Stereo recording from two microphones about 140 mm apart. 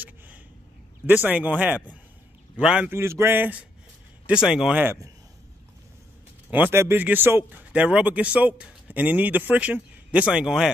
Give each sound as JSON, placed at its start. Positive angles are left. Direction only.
{"t": 1.0, "sound": "speech", "side_deg": -10}
{"t": 4.8, "sound": "speech", "side_deg": -25}
{"t": 6.5, "sound": "speech", "side_deg": -15}